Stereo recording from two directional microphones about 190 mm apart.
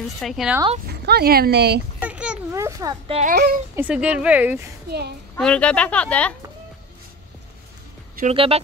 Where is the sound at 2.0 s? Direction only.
5° right (ahead or behind).